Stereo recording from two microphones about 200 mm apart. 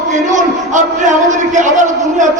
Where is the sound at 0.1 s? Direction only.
40° right (ahead or behind).